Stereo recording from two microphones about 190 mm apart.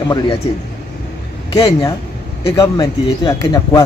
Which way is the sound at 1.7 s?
25° left (ahead or behind).